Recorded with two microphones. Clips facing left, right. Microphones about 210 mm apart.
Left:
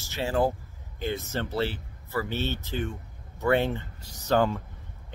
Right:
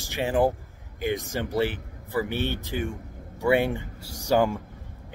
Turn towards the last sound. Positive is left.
turn(degrees=-10)  # may be behind; listen again after turning